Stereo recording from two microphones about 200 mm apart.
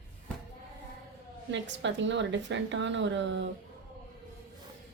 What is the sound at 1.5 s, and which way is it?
A woman's voice, 65° right (ahead or behind).